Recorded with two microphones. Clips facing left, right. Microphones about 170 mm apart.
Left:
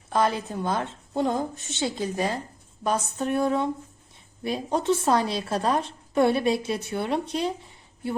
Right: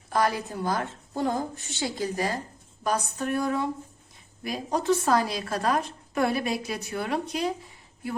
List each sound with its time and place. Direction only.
0.1 s a woman's voice: 25° left (ahead or behind)